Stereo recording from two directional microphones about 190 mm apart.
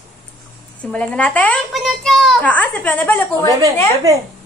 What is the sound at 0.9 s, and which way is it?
A child's voice, 5° left (ahead or behind).